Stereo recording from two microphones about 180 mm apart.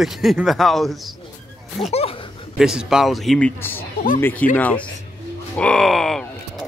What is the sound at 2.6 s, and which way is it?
Speech, 5° right (ahead or behind).